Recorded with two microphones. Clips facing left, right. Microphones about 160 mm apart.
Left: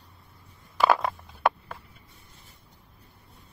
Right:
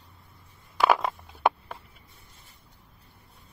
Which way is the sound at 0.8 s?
5° right (ahead or behind).